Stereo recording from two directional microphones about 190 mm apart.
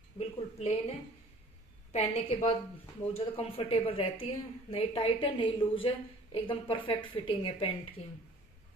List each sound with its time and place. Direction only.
0.2 s a woman's voice: 35° left (ahead or behind)
1.9 s a woman's voice: 30° left (ahead or behind)